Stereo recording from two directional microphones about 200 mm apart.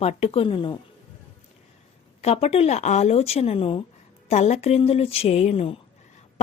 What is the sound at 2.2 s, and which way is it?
Speech, 30° left (ahead or behind).